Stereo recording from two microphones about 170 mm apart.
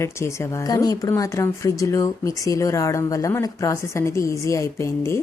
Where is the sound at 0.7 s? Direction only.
20° left (ahead or behind).